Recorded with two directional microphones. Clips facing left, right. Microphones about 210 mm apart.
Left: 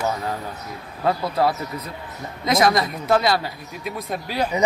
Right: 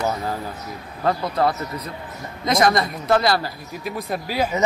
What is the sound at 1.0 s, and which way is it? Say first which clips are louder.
Speech: even; 5° left (ahead or behind).